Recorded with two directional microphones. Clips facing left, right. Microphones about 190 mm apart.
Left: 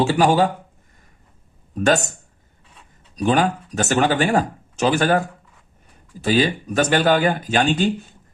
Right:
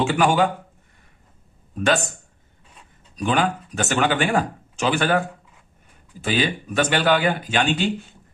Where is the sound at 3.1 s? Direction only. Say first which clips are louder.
Left 3 dB; 40° left (ahead or behind).